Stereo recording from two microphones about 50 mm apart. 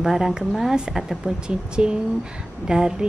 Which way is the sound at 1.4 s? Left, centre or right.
Centre.